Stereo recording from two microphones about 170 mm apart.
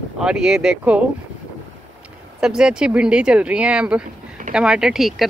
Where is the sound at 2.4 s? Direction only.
5° right (ahead or behind).